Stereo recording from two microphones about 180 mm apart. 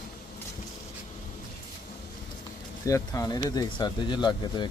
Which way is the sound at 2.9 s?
15° left (ahead or behind).